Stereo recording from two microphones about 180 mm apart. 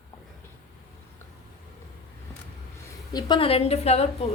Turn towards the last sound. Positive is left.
turn(degrees=35)  # may be behind; listen again after turning